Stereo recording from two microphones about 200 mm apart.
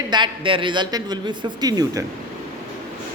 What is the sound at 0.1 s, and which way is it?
A woman's voice, 25° right (ahead or behind).